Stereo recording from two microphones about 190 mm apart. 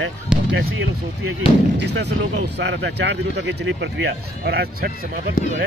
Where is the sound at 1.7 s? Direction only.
65° right (ahead or behind).